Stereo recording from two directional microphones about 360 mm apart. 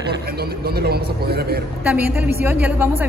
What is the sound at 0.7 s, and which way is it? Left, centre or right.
Speech, right.